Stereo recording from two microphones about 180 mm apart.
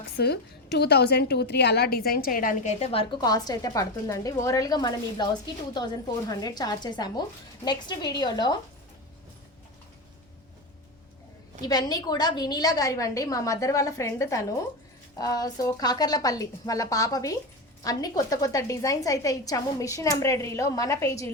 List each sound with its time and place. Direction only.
0.2 s a woman's voice: 65° left (ahead or behind); by 8.5 s 25° left (ahead or behind)
11.6 s a woman's voice: 20° left (ahead or behind)